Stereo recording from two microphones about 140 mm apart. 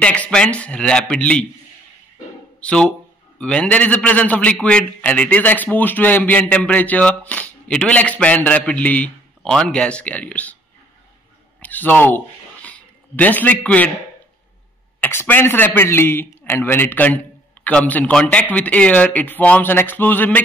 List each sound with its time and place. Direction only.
0.0 s a man's voice: 10° left (ahead or behind)
2.6 s a man's voice: 5° left (ahead or behind)
11.6 s a man's voice: 10° left (ahead or behind)
12.6 s a sound: 10° left (ahead or behind)
15.0 s a man's voice: 15° left (ahead or behind)